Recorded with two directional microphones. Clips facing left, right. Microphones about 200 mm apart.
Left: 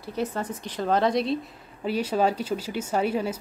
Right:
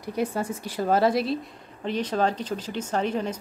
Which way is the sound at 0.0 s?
10° right (ahead or behind).